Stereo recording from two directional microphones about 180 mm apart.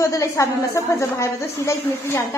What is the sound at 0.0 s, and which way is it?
A woman's voice, 15° left (ahead or behind).